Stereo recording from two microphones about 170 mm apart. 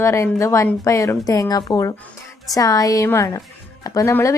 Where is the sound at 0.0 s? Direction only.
15° left (ahead or behind).